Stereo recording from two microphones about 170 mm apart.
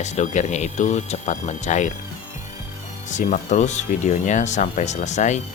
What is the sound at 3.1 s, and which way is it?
Speech, 45° left (ahead or behind).